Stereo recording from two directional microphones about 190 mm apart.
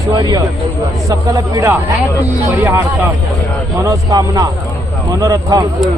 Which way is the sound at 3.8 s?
20° right (ahead or behind).